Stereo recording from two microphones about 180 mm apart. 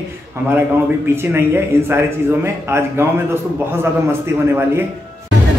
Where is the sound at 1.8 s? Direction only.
15° right (ahead or behind).